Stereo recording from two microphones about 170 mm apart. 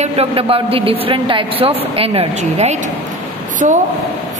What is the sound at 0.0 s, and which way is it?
A woman's voice, 35° right (ahead or behind).